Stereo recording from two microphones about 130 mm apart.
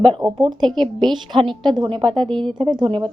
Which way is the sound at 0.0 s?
35° right (ahead or behind).